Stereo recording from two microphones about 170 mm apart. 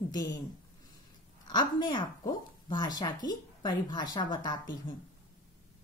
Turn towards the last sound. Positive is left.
turn(degrees=25)  # may be behind; listen again after turning